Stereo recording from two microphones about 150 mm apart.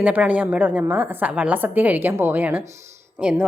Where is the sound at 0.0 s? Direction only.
10° right (ahead or behind).